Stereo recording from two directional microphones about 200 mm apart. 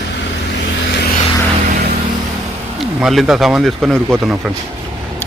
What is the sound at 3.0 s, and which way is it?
Speech, centre (ahead or behind).